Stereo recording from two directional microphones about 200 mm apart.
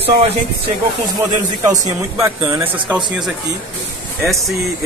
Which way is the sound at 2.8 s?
Centre (ahead or behind).